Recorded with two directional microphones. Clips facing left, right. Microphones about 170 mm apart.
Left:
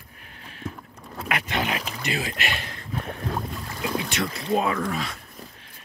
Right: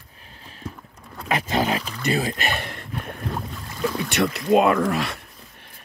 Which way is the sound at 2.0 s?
40° right (ahead or behind).